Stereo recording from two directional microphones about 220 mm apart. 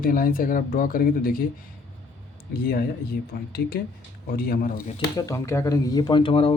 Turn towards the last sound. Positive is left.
turn(degrees=25)  # may be behind; listen again after turning